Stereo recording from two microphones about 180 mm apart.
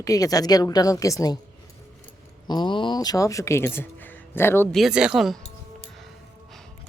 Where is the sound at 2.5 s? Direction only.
25° left (ahead or behind).